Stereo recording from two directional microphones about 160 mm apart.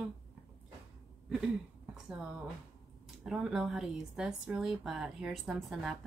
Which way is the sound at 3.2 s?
5° right (ahead or behind).